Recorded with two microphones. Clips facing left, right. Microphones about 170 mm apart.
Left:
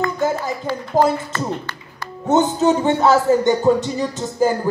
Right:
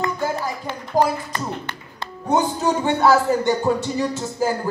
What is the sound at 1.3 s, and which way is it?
Speech, 25° right (ahead or behind).